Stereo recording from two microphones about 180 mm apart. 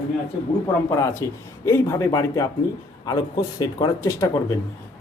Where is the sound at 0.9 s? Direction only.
15° left (ahead or behind).